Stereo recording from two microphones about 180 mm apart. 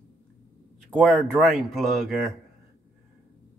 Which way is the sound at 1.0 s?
Centre (ahead or behind).